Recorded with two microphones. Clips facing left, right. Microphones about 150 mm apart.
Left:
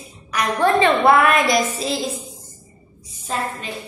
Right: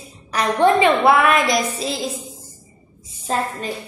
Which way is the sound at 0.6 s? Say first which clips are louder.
Right 1 dB; 10° right (ahead or behind).